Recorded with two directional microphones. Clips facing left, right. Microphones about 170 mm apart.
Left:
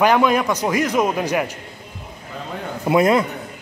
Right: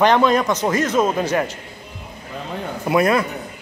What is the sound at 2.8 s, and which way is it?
Speech, 20° left (ahead or behind).